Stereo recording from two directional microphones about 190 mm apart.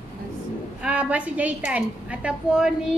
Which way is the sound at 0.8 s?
5° right (ahead or behind).